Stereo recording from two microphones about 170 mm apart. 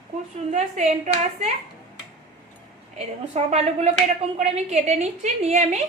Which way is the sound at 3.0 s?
40° right (ahead or behind).